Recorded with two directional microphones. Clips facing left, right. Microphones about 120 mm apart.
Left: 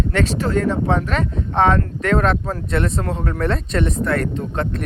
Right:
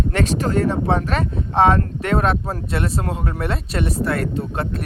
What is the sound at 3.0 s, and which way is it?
Speech, 20° right (ahead or behind).